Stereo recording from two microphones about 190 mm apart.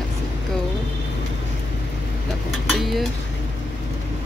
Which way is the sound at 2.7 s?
Centre (ahead or behind).